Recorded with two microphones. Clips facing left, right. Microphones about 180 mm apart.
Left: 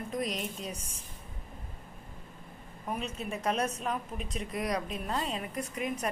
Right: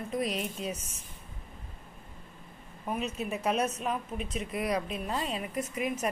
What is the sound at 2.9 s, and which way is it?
A woman's voice, 10° right (ahead or behind).